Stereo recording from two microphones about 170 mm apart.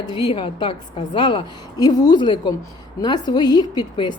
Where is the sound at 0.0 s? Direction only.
30° left (ahead or behind).